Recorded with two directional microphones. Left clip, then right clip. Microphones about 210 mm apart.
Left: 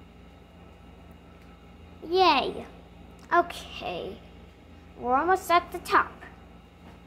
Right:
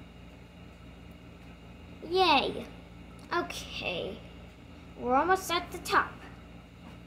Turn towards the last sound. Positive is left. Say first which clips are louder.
# left 5 dB
turn(degrees=5)  # may be behind; listen again after turning